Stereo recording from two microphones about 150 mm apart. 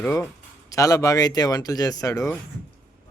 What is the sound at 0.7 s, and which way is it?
Speech, 20° left (ahead or behind).